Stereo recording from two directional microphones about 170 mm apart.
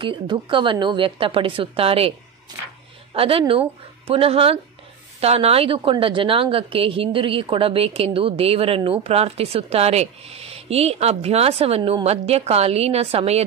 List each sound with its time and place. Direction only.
0.0 s a woman's voice: 30° right (ahead or behind)